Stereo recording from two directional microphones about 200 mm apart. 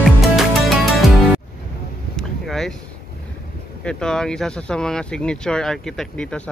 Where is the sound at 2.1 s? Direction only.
Centre (ahead or behind).